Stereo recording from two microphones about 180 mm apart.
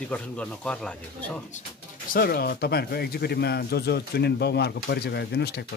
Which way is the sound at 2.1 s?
55° left (ahead or behind).